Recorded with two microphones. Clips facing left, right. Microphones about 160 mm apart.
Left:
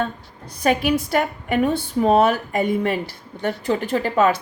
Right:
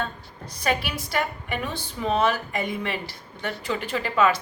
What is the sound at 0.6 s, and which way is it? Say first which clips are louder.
A woman's voice: left 8 dB; 50° left (ahead or behind).